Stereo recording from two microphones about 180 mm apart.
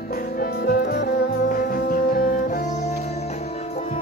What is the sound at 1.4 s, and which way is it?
Music, 50° left (ahead or behind).